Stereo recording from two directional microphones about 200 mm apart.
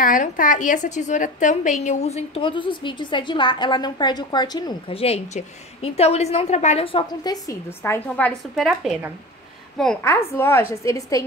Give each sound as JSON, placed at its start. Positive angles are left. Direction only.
{"t": 0.0, "sound": "a woman's voice", "side_deg": 45}
{"t": 7.4, "sound": "a woman's voice", "side_deg": 10}